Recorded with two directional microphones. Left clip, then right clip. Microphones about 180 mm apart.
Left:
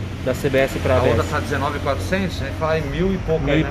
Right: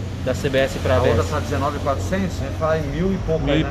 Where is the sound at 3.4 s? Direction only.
25° left (ahead or behind).